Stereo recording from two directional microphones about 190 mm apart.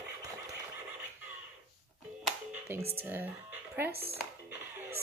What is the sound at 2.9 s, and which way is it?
Speech, 10° right (ahead or behind).